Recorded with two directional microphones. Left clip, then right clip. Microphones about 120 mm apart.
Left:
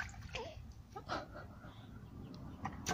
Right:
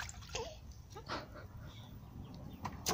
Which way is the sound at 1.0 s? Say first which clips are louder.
Left 1 dB; 5° right (ahead or behind).